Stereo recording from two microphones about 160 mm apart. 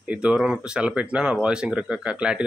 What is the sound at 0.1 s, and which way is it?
Speech, 5° right (ahead or behind).